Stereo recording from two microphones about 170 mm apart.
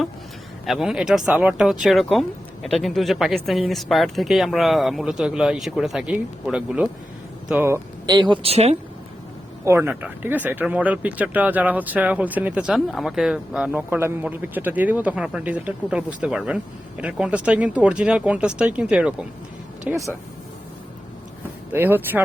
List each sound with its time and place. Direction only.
0.6 s speech: centre (ahead or behind); by 8.8 s 35° right (ahead or behind)
9.6 s speech: 15° right (ahead or behind)
21.7 s speech: 10° right (ahead or behind)